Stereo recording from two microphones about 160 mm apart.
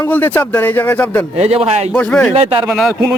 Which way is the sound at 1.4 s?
40° right (ahead or behind).